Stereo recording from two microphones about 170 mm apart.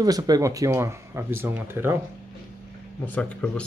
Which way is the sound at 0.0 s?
20° right (ahead or behind).